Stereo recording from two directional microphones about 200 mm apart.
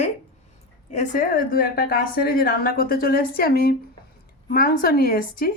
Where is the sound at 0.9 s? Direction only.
40° left (ahead or behind).